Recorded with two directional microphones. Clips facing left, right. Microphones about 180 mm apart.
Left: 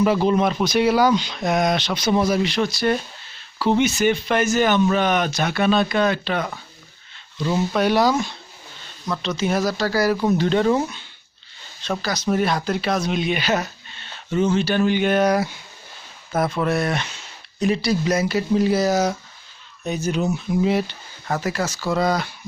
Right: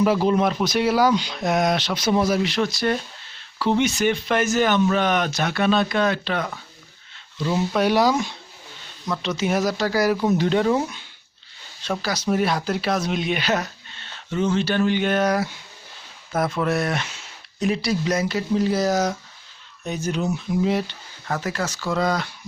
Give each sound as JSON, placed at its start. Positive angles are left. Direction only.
{"t": 0.0, "sound": "speech", "side_deg": 0}
{"t": 9.3, "sound": "speech", "side_deg": -15}
{"t": 16.3, "sound": "speech", "side_deg": 0}